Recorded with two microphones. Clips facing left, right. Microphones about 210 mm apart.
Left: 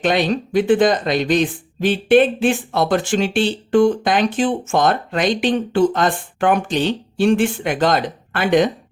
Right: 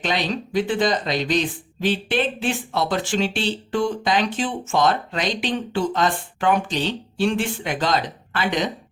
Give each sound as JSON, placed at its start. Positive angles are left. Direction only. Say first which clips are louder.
{"t": 0.0, "sound": "speech", "louder": "left 7 dB", "side_deg": 50}